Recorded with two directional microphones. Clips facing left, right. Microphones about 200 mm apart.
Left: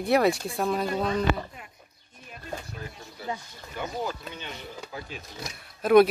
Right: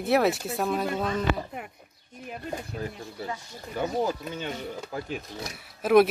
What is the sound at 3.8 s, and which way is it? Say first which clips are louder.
Speech: right 5 dB; 35° right (ahead or behind).